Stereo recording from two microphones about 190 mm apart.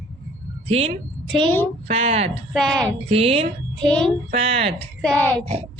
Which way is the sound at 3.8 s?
5° left (ahead or behind).